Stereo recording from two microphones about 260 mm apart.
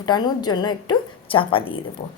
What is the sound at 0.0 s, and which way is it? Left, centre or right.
A woman's voice, centre.